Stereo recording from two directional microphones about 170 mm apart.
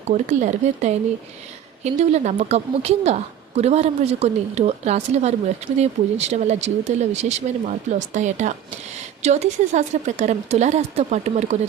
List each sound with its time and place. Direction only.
0.0 s a woman's voice: 45° right (ahead or behind)